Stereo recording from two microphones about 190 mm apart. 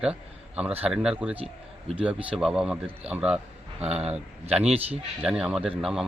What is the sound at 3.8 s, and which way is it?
Speech, 35° right (ahead or behind).